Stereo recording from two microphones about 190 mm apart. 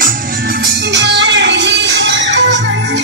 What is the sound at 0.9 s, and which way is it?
Music, 70° right (ahead or behind).